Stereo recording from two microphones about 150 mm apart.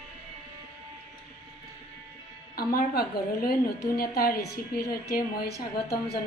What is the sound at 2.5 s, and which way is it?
A woman's voice, 85° left.